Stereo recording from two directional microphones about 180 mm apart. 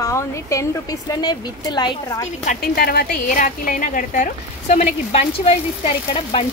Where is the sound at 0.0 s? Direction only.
15° left (ahead or behind).